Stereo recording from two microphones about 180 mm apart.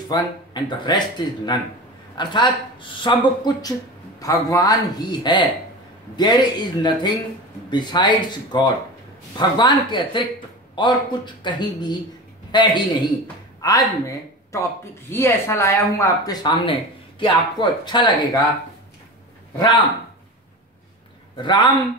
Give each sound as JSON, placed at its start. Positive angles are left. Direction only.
{"t": 0.1, "sound": "a man's voice", "side_deg": 25}
{"t": 21.4, "sound": "speech", "side_deg": 25}